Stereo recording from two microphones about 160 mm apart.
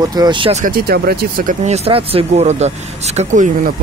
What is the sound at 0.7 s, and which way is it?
Speech, 75° right (ahead or behind).